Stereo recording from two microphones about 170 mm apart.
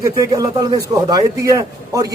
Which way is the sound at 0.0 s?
20° right (ahead or behind).